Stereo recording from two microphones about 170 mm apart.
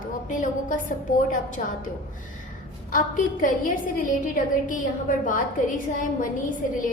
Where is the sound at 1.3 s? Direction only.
50° left (ahead or behind).